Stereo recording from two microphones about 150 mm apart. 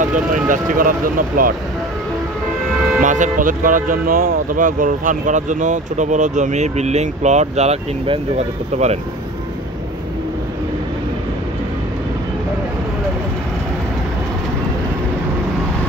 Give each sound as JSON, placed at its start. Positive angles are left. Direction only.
{"t": 0.1, "sound": "speech", "side_deg": -60}
{"t": 3.0, "sound": "speech", "side_deg": -55}